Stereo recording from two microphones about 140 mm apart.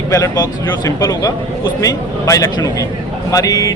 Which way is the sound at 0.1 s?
20° left (ahead or behind).